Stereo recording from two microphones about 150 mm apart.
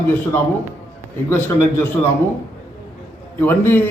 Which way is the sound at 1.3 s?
15° left (ahead or behind).